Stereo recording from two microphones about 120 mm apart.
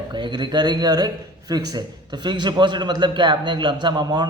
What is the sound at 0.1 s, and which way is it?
A man's voice, 40° right (ahead or behind).